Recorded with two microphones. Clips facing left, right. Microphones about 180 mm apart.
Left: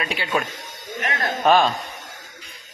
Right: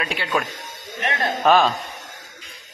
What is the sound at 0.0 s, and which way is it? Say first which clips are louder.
Speech: even; centre (ahead or behind).